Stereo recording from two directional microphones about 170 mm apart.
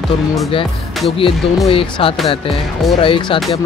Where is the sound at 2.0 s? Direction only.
35° left (ahead or behind).